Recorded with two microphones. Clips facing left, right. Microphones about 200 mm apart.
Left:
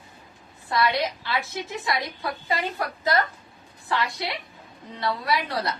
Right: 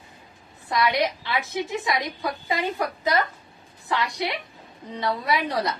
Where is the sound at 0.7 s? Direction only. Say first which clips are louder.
Right 1 dB; 20° right (ahead or behind).